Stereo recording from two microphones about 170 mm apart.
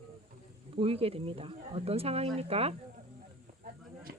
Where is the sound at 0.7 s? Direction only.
35° right (ahead or behind).